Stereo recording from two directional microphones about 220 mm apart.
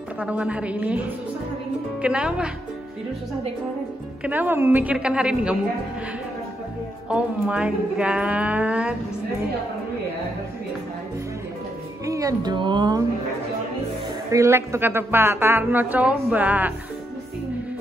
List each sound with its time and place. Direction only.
0.2 s speech: 5° right (ahead or behind)
4.2 s speech: 10° right (ahead or behind)
7.1 s speech: 5° right (ahead or behind)
12.1 s speech: 15° right (ahead or behind)
14.3 s a woman's voice: 15° right (ahead or behind)